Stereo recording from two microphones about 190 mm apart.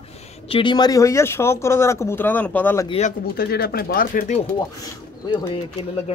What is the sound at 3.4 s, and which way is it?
Speech, 55° left (ahead or behind).